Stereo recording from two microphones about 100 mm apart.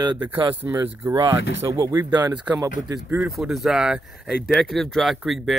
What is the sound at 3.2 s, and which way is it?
Speech, 5° right (ahead or behind).